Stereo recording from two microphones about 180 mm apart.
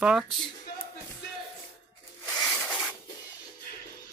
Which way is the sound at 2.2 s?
15° left (ahead or behind).